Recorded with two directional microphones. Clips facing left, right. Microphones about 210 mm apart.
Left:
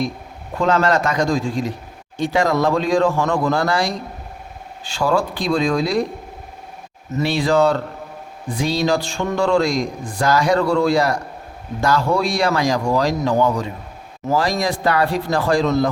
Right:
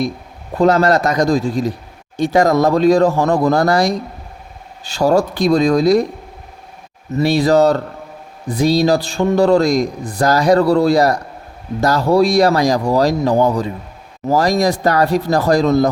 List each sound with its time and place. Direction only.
0.6 s speech: 35° right (ahead or behind)
7.2 s speech: 40° right (ahead or behind)